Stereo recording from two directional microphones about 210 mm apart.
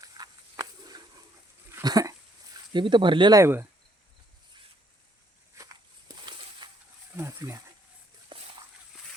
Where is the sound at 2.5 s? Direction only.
20° right (ahead or behind).